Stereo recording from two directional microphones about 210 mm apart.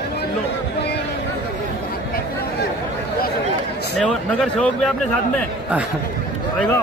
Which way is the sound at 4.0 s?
5° left (ahead or behind).